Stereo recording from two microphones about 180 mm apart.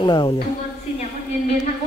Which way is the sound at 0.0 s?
25° left (ahead or behind).